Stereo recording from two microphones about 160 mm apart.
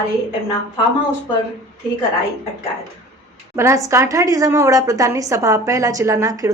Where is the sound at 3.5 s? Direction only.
15° right (ahead or behind).